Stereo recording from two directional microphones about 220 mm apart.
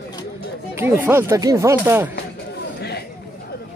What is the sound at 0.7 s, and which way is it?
Speech, 10° right (ahead or behind).